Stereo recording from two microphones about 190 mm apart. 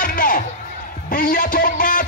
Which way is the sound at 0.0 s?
50° left (ahead or behind).